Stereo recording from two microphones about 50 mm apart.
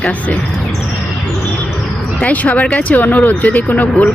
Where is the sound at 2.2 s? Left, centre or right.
Left.